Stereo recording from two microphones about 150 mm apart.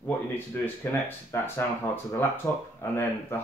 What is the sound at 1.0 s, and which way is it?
Speech, 15° left (ahead or behind).